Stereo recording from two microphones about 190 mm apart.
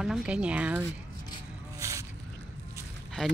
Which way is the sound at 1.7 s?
15° right (ahead or behind).